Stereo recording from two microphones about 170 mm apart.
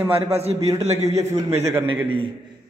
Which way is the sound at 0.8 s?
40° right (ahead or behind).